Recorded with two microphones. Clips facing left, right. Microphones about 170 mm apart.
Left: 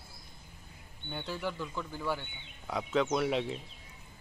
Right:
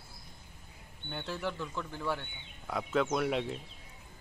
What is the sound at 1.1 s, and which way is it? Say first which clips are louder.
Speech: even; 5° left (ahead or behind).